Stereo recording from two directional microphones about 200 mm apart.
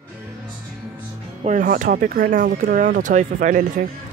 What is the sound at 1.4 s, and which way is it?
Speech, 40° right (ahead or behind).